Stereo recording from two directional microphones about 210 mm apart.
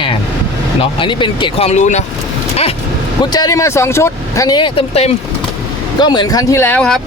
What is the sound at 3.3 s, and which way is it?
Speech, 15° left (ahead or behind).